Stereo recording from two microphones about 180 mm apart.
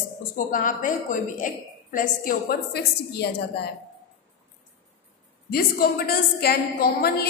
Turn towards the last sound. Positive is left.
turn(degrees=55)  # may be behind; listen again after turning